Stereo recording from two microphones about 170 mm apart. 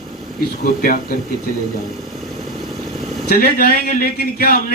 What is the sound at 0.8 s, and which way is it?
Speech, 55° left (ahead or behind).